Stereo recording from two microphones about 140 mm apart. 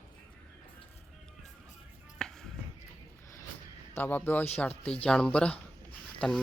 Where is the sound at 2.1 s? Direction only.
5° left (ahead or behind).